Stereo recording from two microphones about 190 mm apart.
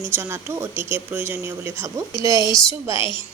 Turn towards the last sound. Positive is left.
turn(degrees=25)  # may be behind; listen again after turning